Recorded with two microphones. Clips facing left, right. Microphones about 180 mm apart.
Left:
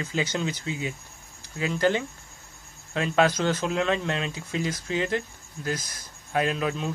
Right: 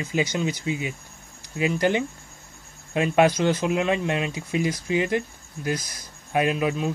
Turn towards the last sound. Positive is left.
turn(degrees=-10)  # may be behind; listen again after turning